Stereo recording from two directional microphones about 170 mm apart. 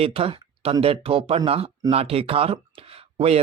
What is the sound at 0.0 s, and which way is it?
Speech, 35° right (ahead or behind).